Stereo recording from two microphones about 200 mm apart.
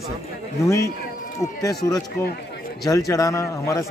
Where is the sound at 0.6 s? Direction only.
15° left (ahead or behind).